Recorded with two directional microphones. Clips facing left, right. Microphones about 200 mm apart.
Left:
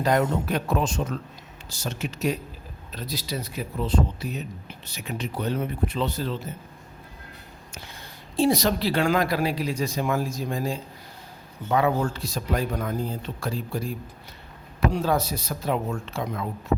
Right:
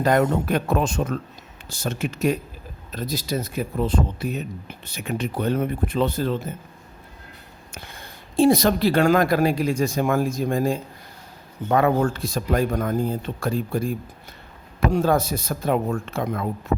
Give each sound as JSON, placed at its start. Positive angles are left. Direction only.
{"t": 0.0, "sound": "speech", "side_deg": -55}
{"t": 7.7, "sound": "speech", "side_deg": -55}